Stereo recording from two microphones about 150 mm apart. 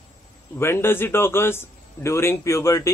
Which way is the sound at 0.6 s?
15° left (ahead or behind).